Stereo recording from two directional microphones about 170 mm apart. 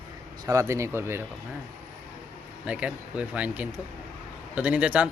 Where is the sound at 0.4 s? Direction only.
20° right (ahead or behind).